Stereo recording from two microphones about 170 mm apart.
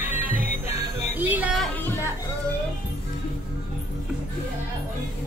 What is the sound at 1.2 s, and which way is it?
Music, 10° right (ahead or behind).